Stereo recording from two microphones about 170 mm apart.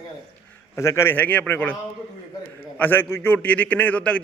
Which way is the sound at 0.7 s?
15° left (ahead or behind).